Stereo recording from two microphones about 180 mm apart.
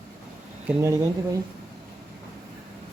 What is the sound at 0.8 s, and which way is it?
Speech, 15° right (ahead or behind).